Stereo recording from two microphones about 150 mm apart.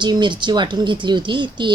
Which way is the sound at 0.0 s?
30° right (ahead or behind).